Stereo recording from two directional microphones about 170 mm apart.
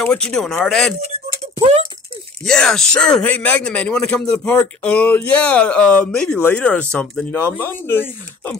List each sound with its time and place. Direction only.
0.0 s speech: 5° left (ahead or behind)
1.0 s a sound: 40° right (ahead or behind)
2.4 s speech: 5° left (ahead or behind)